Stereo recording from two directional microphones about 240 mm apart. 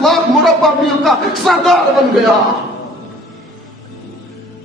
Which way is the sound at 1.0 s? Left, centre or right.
Centre.